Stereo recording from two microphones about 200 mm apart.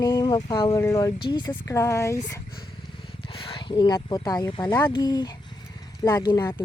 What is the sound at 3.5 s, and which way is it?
Speech, 25° left (ahead or behind).